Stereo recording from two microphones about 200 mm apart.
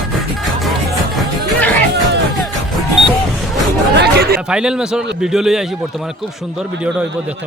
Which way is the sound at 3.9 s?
55° right (ahead or behind).